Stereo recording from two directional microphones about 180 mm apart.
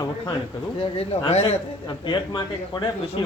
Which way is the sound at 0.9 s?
35° left (ahead or behind).